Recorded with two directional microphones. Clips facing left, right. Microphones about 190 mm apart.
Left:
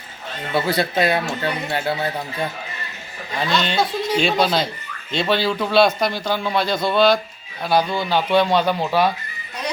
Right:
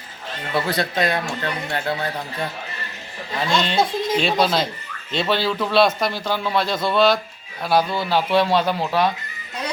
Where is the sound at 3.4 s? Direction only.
Centre (ahead or behind).